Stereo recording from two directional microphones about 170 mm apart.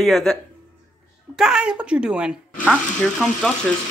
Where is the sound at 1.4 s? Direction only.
5° right (ahead or behind).